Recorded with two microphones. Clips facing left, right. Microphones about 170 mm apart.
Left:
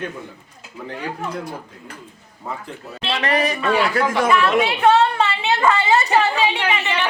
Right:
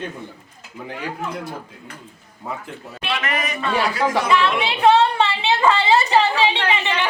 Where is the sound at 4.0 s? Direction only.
55° left (ahead or behind).